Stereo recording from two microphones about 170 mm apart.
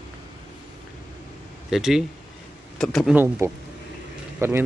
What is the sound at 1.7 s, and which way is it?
Speech, centre (ahead or behind).